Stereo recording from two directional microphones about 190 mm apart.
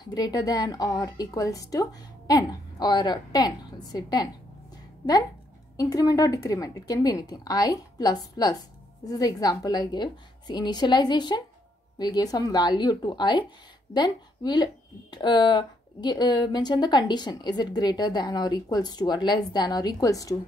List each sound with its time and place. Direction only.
0.0 s speech: 20° left (ahead or behind)
5.8 s speech: 15° left (ahead or behind)